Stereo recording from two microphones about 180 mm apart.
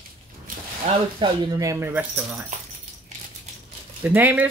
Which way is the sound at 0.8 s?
25° right (ahead or behind).